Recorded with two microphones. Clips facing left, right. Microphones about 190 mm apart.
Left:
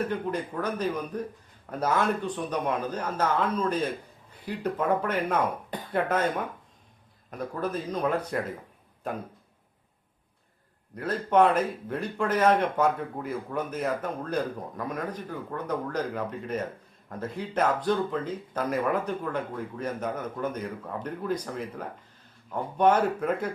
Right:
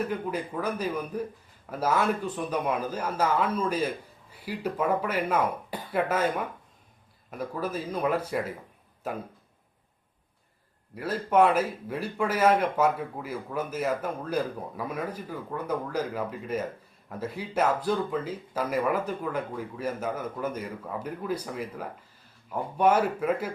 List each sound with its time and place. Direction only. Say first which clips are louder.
0.1 s speech: left 1 dB; 5° right (ahead or behind)
10.9 s speech: even; 5° right (ahead or behind)